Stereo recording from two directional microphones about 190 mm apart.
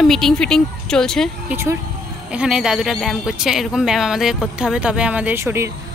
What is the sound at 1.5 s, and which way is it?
Speech, 15° right (ahead or behind).